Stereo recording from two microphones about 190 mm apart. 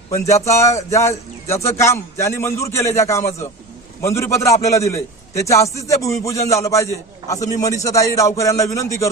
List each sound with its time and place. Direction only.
0.1 s speech: 15° left (ahead or behind)